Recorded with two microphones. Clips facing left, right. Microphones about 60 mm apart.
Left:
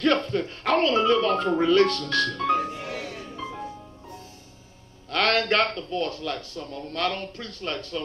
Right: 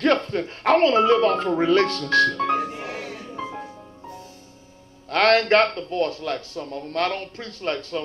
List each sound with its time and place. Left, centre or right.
0.0 s speech: right
5.1 s a man's voice: right